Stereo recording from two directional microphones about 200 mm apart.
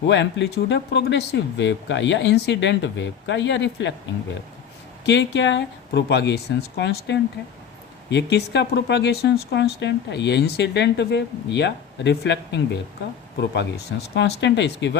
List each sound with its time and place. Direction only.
0.1 s speech: 60° left (ahead or behind)